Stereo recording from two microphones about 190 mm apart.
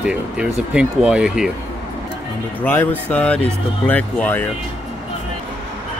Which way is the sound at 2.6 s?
10° left (ahead or behind).